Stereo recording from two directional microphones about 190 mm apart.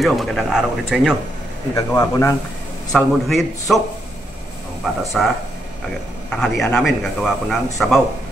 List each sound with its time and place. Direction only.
0.0 s a man's voice: centre (ahead or behind)
1.8 s speech: 15° left (ahead or behind)
2.9 s a man's voice: centre (ahead or behind)
5.2 s a man's voice: centre (ahead or behind)
6.3 s a man's voice: 5° left (ahead or behind)